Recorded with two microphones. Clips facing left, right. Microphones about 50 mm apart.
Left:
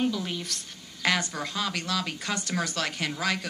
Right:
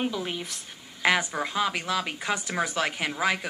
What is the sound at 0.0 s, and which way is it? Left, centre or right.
Speech, centre.